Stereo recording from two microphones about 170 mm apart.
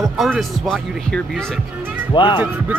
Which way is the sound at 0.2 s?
Centre (ahead or behind).